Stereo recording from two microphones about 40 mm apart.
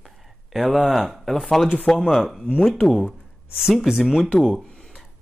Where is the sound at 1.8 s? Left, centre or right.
Centre.